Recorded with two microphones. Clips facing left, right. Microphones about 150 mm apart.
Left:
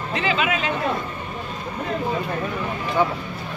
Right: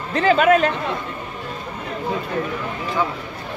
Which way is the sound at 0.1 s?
45° right (ahead or behind).